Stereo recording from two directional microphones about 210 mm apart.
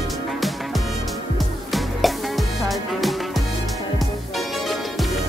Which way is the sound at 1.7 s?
Centre (ahead or behind).